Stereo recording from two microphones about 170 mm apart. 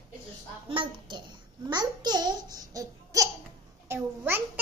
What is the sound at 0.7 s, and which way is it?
A child's voice, 30° right (ahead or behind).